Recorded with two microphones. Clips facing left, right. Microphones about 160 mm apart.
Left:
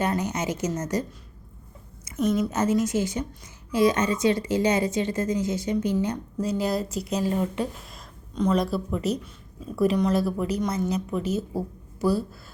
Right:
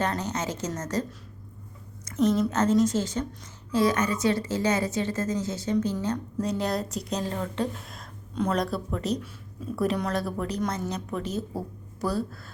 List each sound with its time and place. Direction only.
0.0 s a woman's voice: 10° left (ahead or behind)
2.0 s a woman's voice: 10° left (ahead or behind)
6.4 s a woman's voice: 5° left (ahead or behind)
7.9 s a woman's voice: centre (ahead or behind)